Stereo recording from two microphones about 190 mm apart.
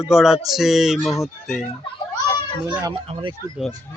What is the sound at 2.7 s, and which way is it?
Speech, 25° right (ahead or behind).